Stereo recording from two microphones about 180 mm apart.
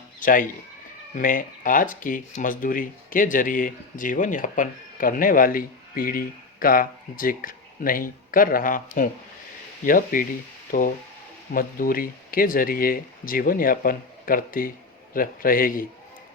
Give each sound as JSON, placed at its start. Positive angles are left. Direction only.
{"t": 0.2, "sound": "speech", "side_deg": 50}